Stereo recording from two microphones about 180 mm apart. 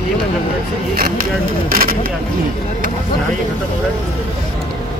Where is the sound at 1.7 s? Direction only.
55° right (ahead or behind).